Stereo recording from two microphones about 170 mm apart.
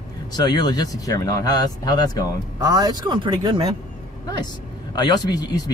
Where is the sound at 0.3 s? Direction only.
25° left (ahead or behind).